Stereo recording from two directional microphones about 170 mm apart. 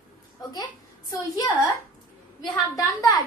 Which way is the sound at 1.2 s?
20° left (ahead or behind).